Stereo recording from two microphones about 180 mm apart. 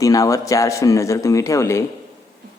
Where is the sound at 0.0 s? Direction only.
20° left (ahead or behind).